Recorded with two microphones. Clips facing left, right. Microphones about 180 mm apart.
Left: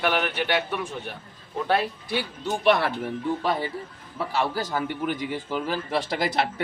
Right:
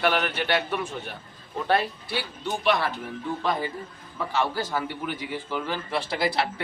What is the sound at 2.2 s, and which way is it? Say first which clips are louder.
Speech: left 1 dB; 50° left (ahead or behind).